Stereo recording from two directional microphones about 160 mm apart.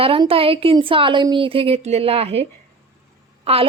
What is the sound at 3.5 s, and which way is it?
Speech, 40° right (ahead or behind).